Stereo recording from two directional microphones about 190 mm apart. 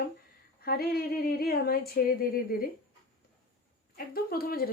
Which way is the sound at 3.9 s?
50° left (ahead or behind).